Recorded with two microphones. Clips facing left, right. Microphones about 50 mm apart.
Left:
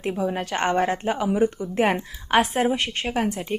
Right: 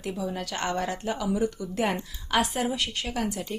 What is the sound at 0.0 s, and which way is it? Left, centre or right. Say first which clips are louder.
Speech: left 6 dB; left.